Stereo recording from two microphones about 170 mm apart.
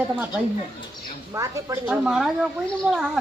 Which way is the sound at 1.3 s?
20° right (ahead or behind).